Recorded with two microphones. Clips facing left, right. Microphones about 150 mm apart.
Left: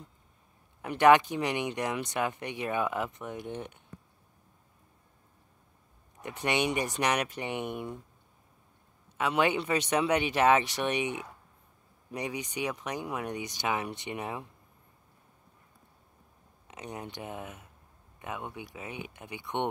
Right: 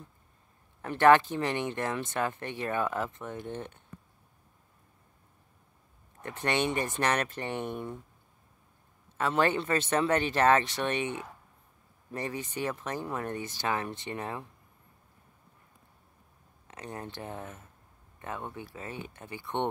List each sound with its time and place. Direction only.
0.8 s speech: 10° left (ahead or behind)
6.3 s speech: 10° left (ahead or behind)
7.1 s speech: centre (ahead or behind)
9.2 s speech: centre (ahead or behind)
12.4 s speech: centre (ahead or behind)
13.7 s speech: 15° left (ahead or behind)
16.6 s speech: 15° left (ahead or behind)
19.4 s speech: centre (ahead or behind)